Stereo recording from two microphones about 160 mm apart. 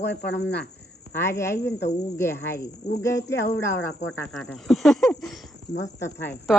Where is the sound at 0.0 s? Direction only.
90° left.